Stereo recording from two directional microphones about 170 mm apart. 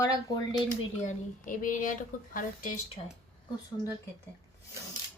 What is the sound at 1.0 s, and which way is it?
A woman's voice, 50° left (ahead or behind).